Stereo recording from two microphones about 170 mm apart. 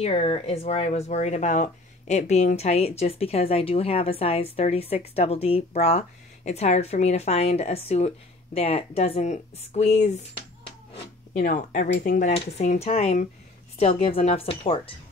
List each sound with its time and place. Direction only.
0.0 s speech: 35° left (ahead or behind)
11.3 s speech: 50° left (ahead or behind)
12.4 s speech: 40° left (ahead or behind)